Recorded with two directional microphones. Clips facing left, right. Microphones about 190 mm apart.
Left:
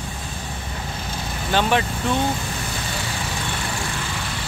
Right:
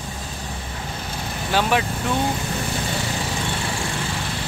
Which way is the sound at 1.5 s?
5° right (ahead or behind).